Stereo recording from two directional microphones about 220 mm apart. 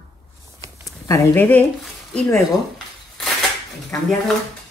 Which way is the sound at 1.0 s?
15° left (ahead or behind).